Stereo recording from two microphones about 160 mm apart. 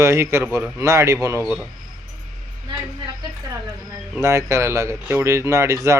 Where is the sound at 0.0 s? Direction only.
15° right (ahead or behind).